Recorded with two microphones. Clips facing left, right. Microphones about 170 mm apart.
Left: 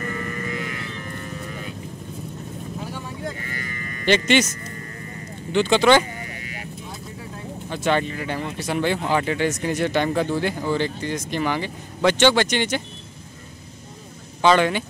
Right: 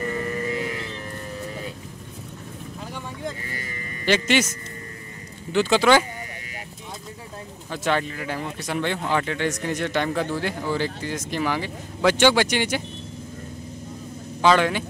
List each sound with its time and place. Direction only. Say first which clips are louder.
0.0 s a sound: right 3 dB; 25° right (ahead or behind)
4.0 s speech: left 2 dB; 5° right (ahead or behind)
5.5 s speech: left 1 dB; 5° right (ahead or behind)
7.7 s speech: left 2 dB; centre (ahead or behind)
14.4 s speech: left 1 dB; centre (ahead or behind)